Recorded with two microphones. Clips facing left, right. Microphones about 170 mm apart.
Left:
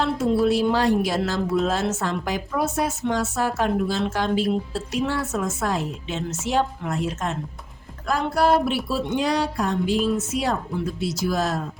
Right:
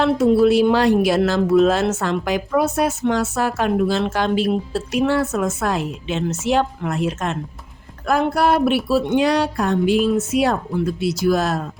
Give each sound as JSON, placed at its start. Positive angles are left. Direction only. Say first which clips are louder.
{"t": 0.4, "sound": "speech", "louder": "right 5 dB", "side_deg": -70}